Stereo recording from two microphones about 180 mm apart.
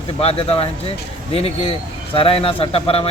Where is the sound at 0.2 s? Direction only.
35° left (ahead or behind).